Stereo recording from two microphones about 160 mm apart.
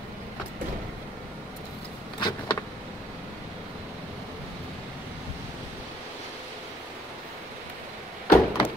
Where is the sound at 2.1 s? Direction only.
25° left (ahead or behind).